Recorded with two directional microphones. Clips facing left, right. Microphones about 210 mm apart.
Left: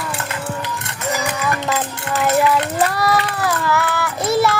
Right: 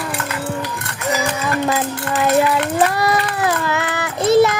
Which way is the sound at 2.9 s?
20° right (ahead or behind).